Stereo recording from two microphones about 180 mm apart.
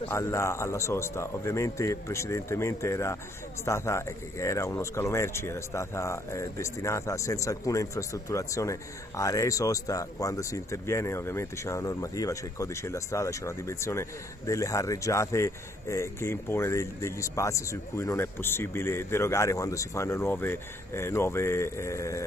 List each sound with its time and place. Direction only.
0.0 s speech: 15° left (ahead or behind)